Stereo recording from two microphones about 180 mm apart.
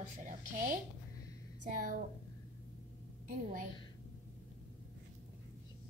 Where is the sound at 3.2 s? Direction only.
50° right (ahead or behind).